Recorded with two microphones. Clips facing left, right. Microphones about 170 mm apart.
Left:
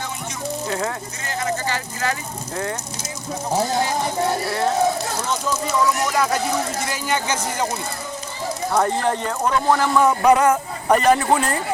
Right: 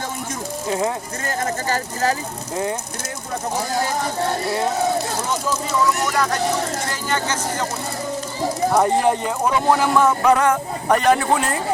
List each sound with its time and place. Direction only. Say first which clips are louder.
0.7 s speech: right 5 dB; 20° right (ahead or behind)
1.3 s speech: right 1 dB; 45° right (ahead or behind)
6.1 s speech: even; 5° left (ahead or behind)
8.7 s speech: right 2 dB; 15° right (ahead or behind)
10.0 s speech: left 1 dB; 10° left (ahead or behind)